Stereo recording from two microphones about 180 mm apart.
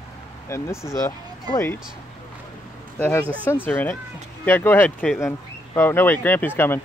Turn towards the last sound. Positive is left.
turn(degrees=10)  # may be behind; listen again after turning